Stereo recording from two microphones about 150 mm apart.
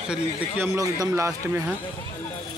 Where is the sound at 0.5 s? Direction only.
20° right (ahead or behind).